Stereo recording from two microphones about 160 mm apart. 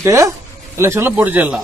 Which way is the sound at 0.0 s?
20° right (ahead or behind).